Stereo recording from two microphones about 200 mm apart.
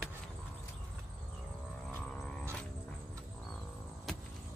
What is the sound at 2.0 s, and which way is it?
Music, 5° left (ahead or behind).